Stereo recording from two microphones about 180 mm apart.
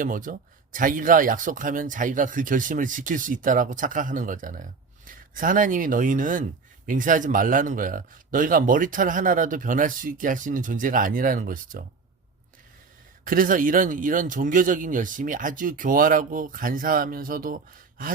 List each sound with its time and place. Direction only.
0.0 s speech: 50° right (ahead or behind)
13.2 s speech: 50° right (ahead or behind)